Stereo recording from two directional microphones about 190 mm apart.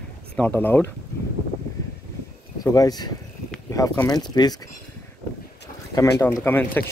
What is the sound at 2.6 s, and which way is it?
Speech, 20° left (ahead or behind).